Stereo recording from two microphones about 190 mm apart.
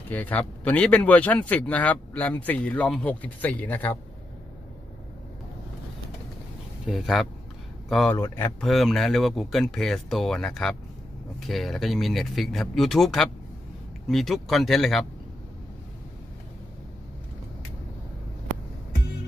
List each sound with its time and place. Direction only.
0.1 s speech: 10° left (ahead or behind)
6.9 s speech: centre (ahead or behind)
8.2 s speech: 15° left (ahead or behind)
8.5 s speech: centre (ahead or behind)